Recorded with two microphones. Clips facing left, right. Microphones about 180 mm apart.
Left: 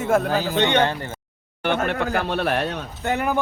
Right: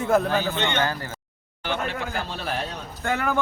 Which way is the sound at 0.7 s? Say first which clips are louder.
Left 5 dB; 25° left (ahead or behind).